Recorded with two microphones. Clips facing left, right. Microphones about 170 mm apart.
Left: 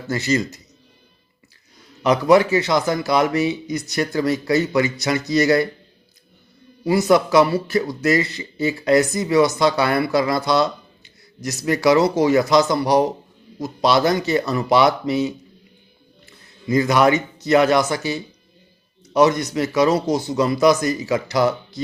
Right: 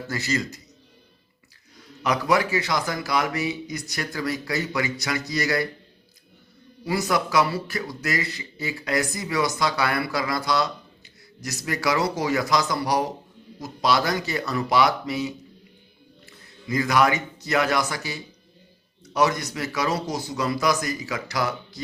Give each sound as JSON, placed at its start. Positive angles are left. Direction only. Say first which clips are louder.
{"t": 0.1, "sound": "speech", "louder": "left 7 dB", "side_deg": 20}
{"t": 2.0, "sound": "speech", "louder": "left 8 dB", "side_deg": 25}
{"t": 6.8, "sound": "speech", "louder": "left 8 dB", "side_deg": 25}
{"t": 16.6, "sound": "speech", "louder": "left 5 dB", "side_deg": 25}